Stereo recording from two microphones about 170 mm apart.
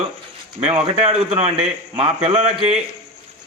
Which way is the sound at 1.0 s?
40° right (ahead or behind).